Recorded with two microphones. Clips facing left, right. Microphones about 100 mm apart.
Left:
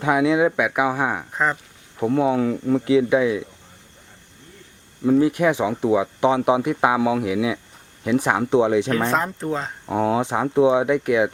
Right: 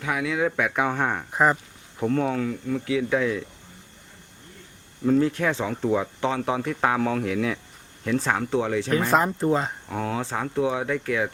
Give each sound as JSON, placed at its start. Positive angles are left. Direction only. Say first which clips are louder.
{"t": 0.0, "sound": "speech", "louder": "left 7 dB", "side_deg": 25}
{"t": 1.3, "sound": "speech", "louder": "right 2 dB", "side_deg": -5}
{"t": 2.0, "sound": "speech", "louder": "left 5 dB", "side_deg": 10}
{"t": 2.4, "sound": "speech", "louder": "left 7 dB", "side_deg": 30}
{"t": 2.8, "sound": "speech", "louder": "left 6 dB", "side_deg": 20}
{"t": 5.0, "sound": "speech", "louder": "left 4 dB", "side_deg": 10}
{"t": 8.9, "sound": "speech", "louder": "even", "side_deg": 0}
{"t": 9.8, "sound": "speech", "louder": "left 8 dB", "side_deg": 25}